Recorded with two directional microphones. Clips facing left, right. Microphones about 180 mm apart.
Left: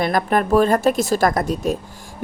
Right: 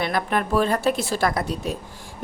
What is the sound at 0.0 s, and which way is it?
A woman's voice, 45° left (ahead or behind).